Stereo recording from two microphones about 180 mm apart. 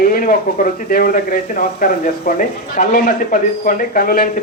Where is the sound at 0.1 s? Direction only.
50° left (ahead or behind).